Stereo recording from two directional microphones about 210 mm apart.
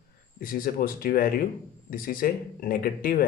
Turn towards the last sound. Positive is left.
turn(degrees=45)  # may be behind; listen again after turning